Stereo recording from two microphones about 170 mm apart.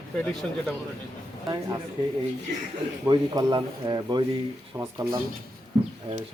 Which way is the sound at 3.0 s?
20° right (ahead or behind).